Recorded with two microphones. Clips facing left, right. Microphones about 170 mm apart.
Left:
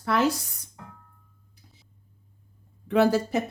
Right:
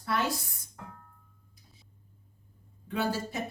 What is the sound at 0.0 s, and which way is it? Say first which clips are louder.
Speech: left 7 dB; 90° left.